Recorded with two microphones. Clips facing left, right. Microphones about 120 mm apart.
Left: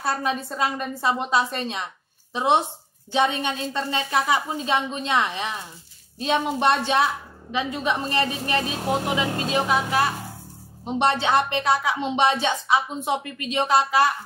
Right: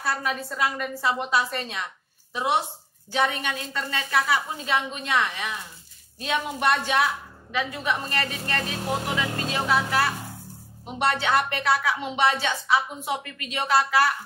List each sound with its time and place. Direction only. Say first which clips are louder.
0.0 s speech: left 3 dB; 25° left (ahead or behind)